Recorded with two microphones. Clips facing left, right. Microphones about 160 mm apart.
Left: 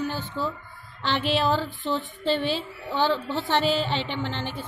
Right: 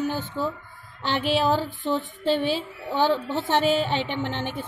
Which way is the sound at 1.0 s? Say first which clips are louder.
Right 1 dB; 45° right (ahead or behind).